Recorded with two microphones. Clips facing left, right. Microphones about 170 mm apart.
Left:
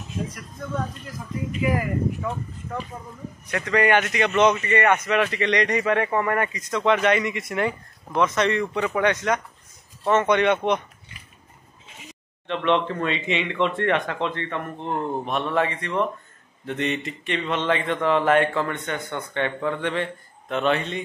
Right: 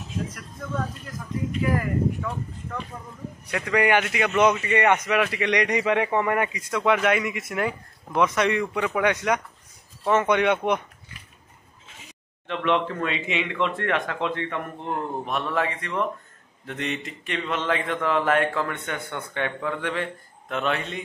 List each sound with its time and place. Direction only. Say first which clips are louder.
0.3 s speech: left 1 dB; centre (ahead or behind)
2.9 s speech: left 1 dB; 20° left (ahead or behind)
3.5 s speech: left 1 dB; 10° right (ahead or behind)
12.4 s speech: left 2 dB; 5° right (ahead or behind)